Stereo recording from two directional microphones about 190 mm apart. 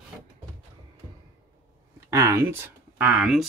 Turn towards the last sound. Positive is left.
turn(degrees=-5)  # may be behind; listen again after turning